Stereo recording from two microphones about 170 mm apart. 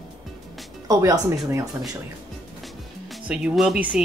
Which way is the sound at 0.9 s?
20° right (ahead or behind).